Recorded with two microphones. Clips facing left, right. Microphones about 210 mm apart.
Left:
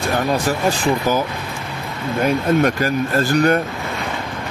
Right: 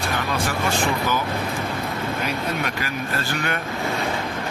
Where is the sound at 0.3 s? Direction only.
40° left (ahead or behind).